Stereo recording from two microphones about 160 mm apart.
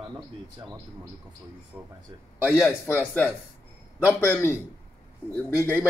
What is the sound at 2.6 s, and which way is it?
Speech, 10° left (ahead or behind).